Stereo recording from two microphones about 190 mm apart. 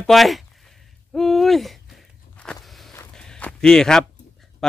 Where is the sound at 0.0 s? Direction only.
Centre (ahead or behind).